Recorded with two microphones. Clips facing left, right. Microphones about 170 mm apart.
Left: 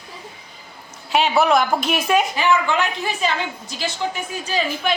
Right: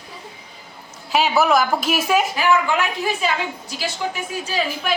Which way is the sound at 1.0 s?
Centre (ahead or behind).